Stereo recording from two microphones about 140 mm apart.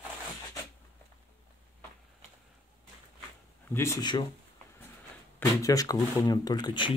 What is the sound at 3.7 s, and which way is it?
Speech, 20° left (ahead or behind).